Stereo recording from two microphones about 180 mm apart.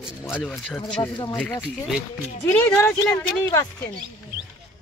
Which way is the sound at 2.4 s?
10° left (ahead or behind).